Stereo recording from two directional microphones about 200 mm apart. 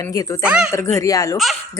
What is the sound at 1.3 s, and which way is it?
Speech, centre (ahead or behind).